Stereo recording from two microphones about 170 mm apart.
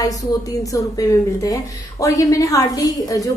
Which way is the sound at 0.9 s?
20° left (ahead or behind).